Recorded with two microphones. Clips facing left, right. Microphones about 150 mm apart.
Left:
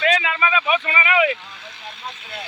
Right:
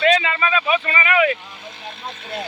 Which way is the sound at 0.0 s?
5° left (ahead or behind).